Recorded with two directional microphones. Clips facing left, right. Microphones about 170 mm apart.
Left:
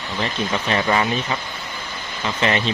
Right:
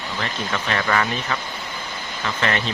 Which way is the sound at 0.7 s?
20° left (ahead or behind).